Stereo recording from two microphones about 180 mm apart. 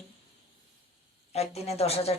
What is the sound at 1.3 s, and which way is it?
Speech, 35° left (ahead or behind).